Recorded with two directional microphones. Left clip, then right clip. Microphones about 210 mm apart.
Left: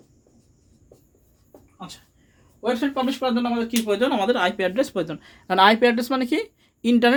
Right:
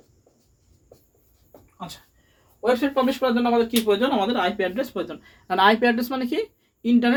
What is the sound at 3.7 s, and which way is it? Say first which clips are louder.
Speech: right 1 dB; 30° left (ahead or behind).